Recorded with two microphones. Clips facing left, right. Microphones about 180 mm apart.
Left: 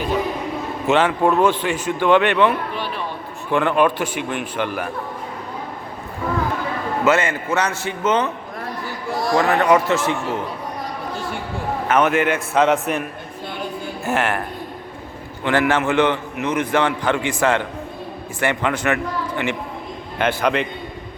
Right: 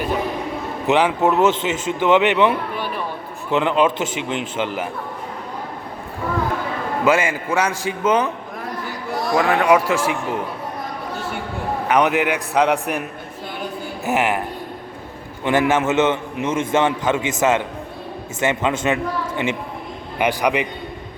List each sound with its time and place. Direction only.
0.9 s a man's voice: 15° right (ahead or behind)
7.0 s a man's voice: 10° right (ahead or behind)
9.3 s a man's voice: 10° right (ahead or behind)
11.9 s a man's voice: 15° right (ahead or behind)
14.0 s a man's voice: 15° right (ahead or behind)
15.4 s a man's voice: 20° right (ahead or behind)
20.1 s a man's voice: 15° right (ahead or behind)